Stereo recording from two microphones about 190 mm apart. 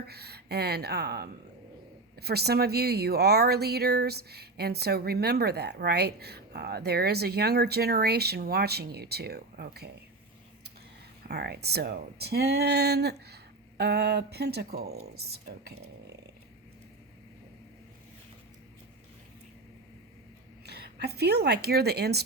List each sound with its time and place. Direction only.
0.1 s speech: 55° right (ahead or behind)
11.3 s speech: 60° right (ahead or behind)
20.7 s a woman's voice: 60° right (ahead or behind)